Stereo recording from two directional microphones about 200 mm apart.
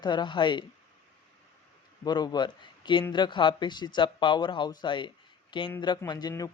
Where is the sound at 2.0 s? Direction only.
20° left (ahead or behind).